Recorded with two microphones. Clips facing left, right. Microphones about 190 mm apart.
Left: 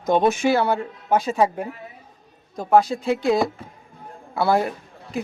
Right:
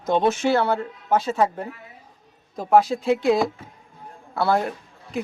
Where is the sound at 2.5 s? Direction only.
Centre (ahead or behind).